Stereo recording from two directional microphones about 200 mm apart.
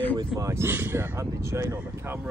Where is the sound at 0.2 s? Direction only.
15° right (ahead or behind).